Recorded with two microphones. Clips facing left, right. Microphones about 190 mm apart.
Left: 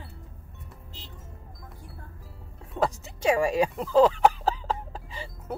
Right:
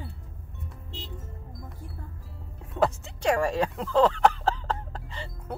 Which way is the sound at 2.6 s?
Centre (ahead or behind).